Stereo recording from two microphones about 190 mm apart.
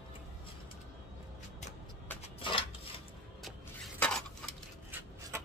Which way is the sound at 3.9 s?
5° left (ahead or behind).